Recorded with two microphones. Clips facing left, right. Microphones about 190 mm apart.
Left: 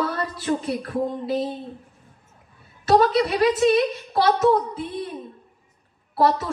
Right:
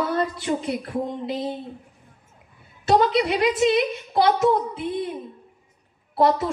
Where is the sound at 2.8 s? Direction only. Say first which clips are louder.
Left 1 dB; 15° right (ahead or behind).